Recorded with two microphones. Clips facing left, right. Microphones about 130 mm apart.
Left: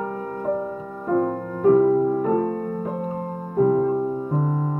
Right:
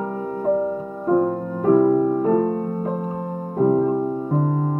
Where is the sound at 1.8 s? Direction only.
45° right (ahead or behind).